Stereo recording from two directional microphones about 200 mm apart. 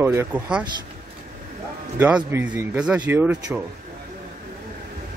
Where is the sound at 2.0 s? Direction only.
10° right (ahead or behind).